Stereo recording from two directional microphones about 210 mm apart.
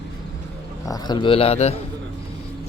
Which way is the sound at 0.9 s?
20° left (ahead or behind).